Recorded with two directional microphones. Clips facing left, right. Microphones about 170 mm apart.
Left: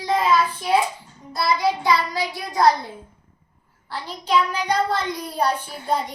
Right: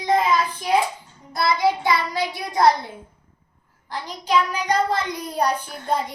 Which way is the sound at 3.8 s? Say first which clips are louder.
Right 1 dB; 15° right (ahead or behind).